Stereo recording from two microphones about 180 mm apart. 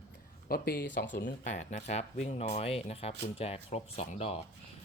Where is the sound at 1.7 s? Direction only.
40° left (ahead or behind).